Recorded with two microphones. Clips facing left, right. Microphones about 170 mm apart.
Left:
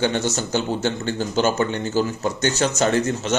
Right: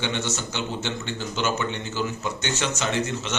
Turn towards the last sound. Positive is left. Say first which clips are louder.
# left 6 dB
turn(degrees=40)  # may be behind; listen again after turning